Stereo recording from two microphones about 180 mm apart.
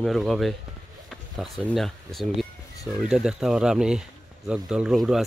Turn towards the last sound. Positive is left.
turn(degrees=0)  # may be behind; listen again after turning